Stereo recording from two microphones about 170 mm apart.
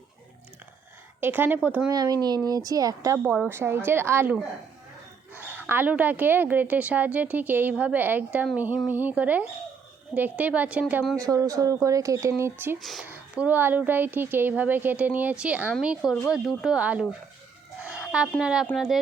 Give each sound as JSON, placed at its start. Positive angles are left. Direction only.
{"t": 1.2, "sound": "speech", "side_deg": -10}
{"t": 1.9, "sound": "speech", "side_deg": -25}
{"t": 5.4, "sound": "speech", "side_deg": -10}
{"t": 11.2, "sound": "speech", "side_deg": -20}
{"t": 12.8, "sound": "speech", "side_deg": 0}
{"t": 17.8, "sound": "a sound", "side_deg": -5}
{"t": 18.3, "sound": "speech", "side_deg": -5}